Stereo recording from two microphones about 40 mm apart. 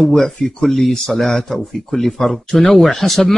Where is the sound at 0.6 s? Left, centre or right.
Centre.